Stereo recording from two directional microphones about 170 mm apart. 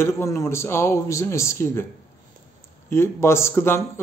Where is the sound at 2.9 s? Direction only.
15° left (ahead or behind).